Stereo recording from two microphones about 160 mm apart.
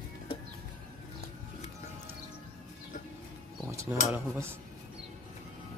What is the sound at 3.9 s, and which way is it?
Speech, 15° right (ahead or behind).